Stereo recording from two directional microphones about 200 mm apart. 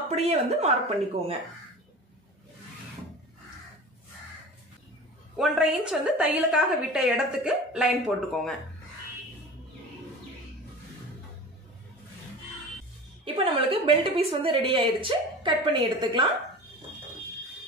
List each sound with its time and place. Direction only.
0.1 s a woman's voice: 35° right (ahead or behind)
5.3 s a woman's voice: centre (ahead or behind)
13.2 s a woman's voice: 25° right (ahead or behind)